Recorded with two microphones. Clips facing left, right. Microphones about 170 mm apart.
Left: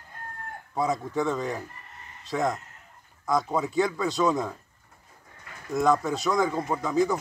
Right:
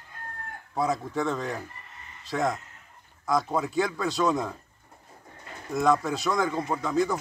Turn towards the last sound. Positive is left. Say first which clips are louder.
# left 1 dB
turn(degrees=0)  # may be behind; listen again after turning